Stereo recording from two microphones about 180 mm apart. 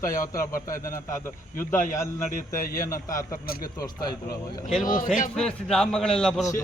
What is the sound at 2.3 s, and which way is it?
Speech, 50° left (ahead or behind).